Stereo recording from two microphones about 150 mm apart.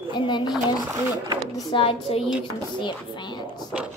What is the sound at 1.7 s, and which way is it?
Speech, 35° left (ahead or behind).